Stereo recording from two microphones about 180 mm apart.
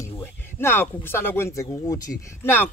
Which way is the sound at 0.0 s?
15° left (ahead or behind).